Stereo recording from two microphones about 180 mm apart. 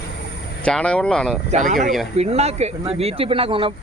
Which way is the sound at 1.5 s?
40° right (ahead or behind).